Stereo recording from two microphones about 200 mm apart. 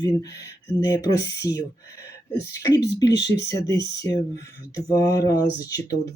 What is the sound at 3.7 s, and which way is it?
Speech, 20° left (ahead or behind).